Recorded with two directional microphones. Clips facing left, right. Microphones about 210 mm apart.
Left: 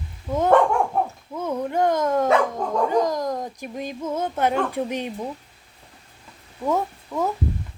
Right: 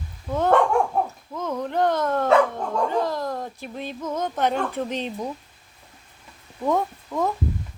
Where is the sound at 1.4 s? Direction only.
10° left (ahead or behind).